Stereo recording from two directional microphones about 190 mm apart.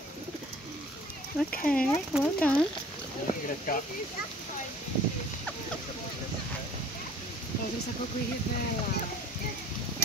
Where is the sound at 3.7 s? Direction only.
50° left (ahead or behind).